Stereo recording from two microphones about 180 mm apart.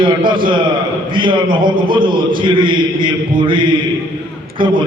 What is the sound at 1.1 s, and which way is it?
A man's voice, 25° right (ahead or behind).